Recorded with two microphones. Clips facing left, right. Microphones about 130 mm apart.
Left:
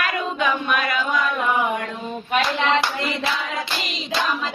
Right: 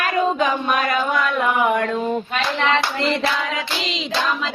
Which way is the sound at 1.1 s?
70° right (ahead or behind).